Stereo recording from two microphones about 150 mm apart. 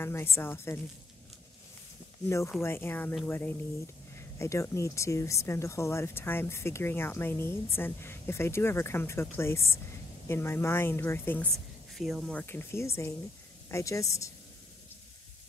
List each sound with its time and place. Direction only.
0.0 s speech: 15° left (ahead or behind)
2.2 s a woman's voice: 20° left (ahead or behind)
11.5 s speech: centre (ahead or behind)
12.4 s a woman's voice: 15° left (ahead or behind)